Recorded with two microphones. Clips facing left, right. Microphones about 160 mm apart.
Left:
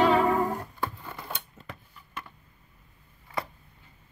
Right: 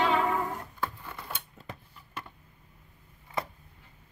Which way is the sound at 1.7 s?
25° right (ahead or behind).